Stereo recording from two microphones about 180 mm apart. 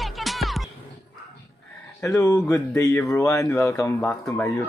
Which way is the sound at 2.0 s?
15° left (ahead or behind).